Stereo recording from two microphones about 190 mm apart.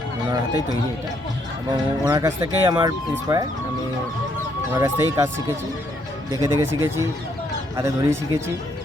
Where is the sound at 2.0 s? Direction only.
20° right (ahead or behind).